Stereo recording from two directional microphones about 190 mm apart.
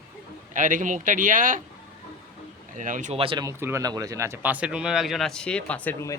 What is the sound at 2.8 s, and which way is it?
Speech, 40° right (ahead or behind).